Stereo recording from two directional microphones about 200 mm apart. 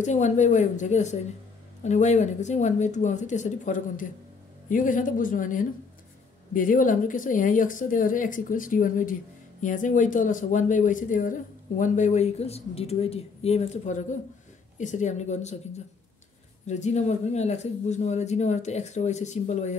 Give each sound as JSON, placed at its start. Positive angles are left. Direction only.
{"t": 0.0, "sound": "speech", "side_deg": 35}